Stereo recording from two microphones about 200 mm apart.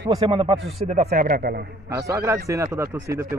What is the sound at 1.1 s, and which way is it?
Speech, 50° right (ahead or behind).